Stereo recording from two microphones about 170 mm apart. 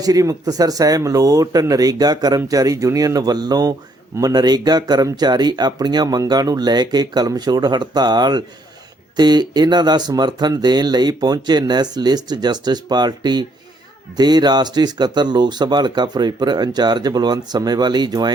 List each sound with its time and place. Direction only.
0.0 s speech: 20° right (ahead or behind)